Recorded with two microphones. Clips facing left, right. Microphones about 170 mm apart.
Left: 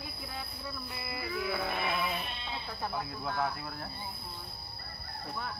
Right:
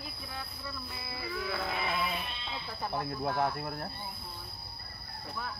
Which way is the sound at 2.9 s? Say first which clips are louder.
Right 5 dB; 50° right (ahead or behind).